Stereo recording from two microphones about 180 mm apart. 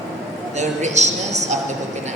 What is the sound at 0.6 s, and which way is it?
A man's voice, 40° right (ahead or behind).